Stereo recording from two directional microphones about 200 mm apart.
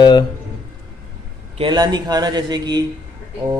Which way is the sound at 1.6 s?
20° right (ahead or behind).